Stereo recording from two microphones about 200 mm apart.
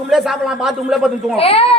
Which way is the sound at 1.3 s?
30° left (ahead or behind).